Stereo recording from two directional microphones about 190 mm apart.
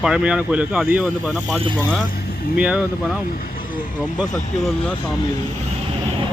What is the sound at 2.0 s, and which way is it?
Speech, 50° left (ahead or behind).